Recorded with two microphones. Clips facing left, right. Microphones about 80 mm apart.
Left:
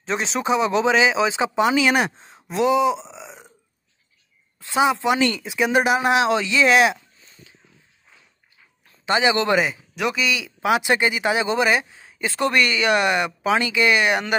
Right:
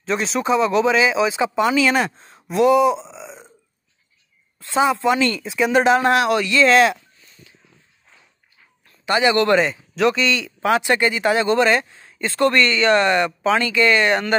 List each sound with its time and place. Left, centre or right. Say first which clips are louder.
0.0 s speech: right 2 dB; left
4.6 s speech: right 1 dB; centre
9.0 s speech: right 2 dB; left
9.6 s speech: right 4 dB; centre